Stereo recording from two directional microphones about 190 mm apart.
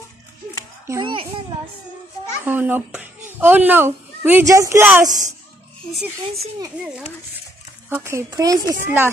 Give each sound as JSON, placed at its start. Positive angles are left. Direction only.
{"t": 0.8, "sound": "a child's voice", "side_deg": -15}
{"t": 2.4, "sound": "a woman's voice", "side_deg": -10}
{"t": 6.8, "sound": "a woman's voice", "side_deg": -5}